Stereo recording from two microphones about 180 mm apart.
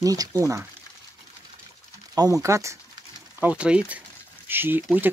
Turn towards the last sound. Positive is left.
turn(degrees=-10)  # may be behind; listen again after turning